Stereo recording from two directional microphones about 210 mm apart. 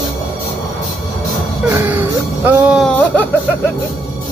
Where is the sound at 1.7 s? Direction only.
10° right (ahead or behind).